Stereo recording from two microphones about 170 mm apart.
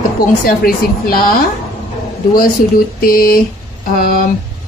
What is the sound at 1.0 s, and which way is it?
Speech, 60° left (ahead or behind).